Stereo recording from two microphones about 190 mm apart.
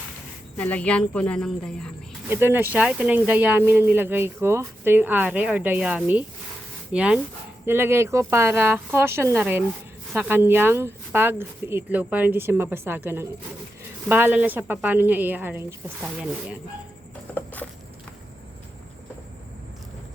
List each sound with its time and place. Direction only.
0.5 s speech: 10° left (ahead or behind)
2.3 s speech: 10° right (ahead or behind)
17.3 s a sound: 10° left (ahead or behind)